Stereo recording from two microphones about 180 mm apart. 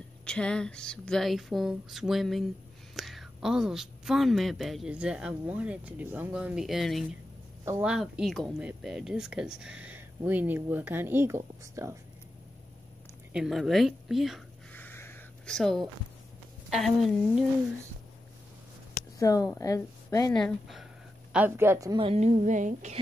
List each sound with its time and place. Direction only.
0.2 s a woman's voice: 5° left (ahead or behind); by 12.0 s 15° right (ahead or behind)
13.3 s a woman's voice: centre (ahead or behind)
14.7 s a sound: 10° left (ahead or behind)
15.5 s a woman's voice: centre (ahead or behind)
19.1 s a woman's voice: 20° left (ahead or behind)
20.3 s a woman's voice: centre (ahead or behind)
21.3 s speech: 10° right (ahead or behind)
22.0 s a woman's voice: 35° right (ahead or behind)